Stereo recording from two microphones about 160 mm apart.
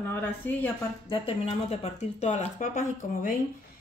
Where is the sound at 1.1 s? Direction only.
35° left (ahead or behind).